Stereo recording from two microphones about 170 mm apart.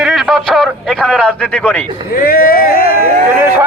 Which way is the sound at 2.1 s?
60° left (ahead or behind).